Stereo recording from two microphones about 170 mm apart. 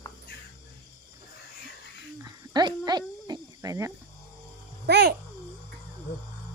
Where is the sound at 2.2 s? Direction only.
25° right (ahead or behind).